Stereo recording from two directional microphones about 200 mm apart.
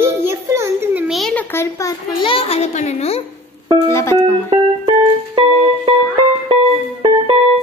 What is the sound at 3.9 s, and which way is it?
Speech, 15° left (ahead or behind).